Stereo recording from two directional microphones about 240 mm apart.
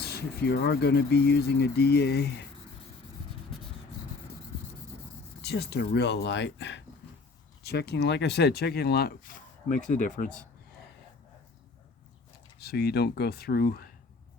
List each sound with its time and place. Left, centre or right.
0.0 s speech: left
5.4 s speech: left
12.5 s speech: left